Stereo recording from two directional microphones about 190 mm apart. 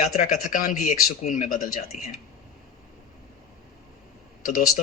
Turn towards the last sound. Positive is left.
turn(degrees=45)  # may be behind; listen again after turning